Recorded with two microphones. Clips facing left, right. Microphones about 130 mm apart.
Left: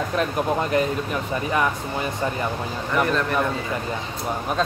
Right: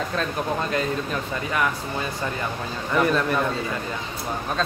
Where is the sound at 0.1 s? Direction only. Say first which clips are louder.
Left 3 dB; 20° left (ahead or behind).